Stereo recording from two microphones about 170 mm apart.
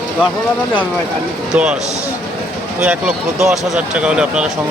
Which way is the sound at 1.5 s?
5° right (ahead or behind).